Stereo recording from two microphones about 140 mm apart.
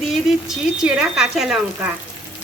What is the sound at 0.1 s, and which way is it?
A woman's voice, 5° right (ahead or behind).